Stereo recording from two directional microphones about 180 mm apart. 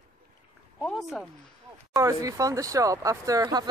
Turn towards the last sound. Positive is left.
turn(degrees=-20)  # may be behind; listen again after turning